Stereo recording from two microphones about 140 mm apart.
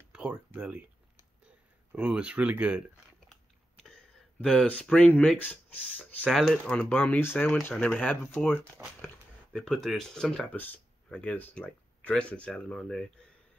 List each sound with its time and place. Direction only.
0.1 s speech: 10° right (ahead or behind)
1.9 s speech: 10° right (ahead or behind)
3.8 s speech: 5° left (ahead or behind)